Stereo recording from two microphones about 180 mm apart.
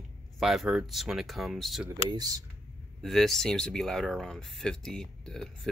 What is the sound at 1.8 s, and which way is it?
Speech, 20° right (ahead or behind).